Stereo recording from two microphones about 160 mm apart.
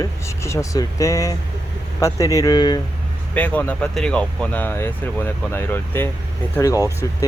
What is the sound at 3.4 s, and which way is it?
Speech, 10° left (ahead or behind).